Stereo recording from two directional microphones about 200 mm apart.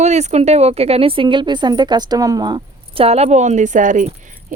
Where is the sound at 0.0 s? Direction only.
35° right (ahead or behind).